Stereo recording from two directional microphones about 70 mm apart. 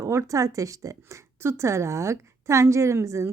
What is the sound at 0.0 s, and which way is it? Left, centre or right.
Speech, right.